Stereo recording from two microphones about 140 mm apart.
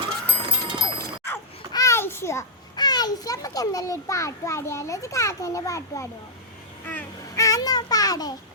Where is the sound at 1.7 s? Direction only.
20° left (ahead or behind).